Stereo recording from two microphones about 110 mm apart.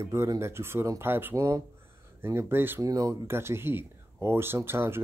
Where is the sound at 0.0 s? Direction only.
25° right (ahead or behind).